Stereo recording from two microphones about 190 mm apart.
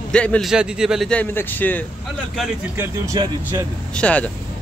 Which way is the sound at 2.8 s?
20° right (ahead or behind).